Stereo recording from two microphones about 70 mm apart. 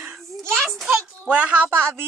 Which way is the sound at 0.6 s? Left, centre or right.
Centre.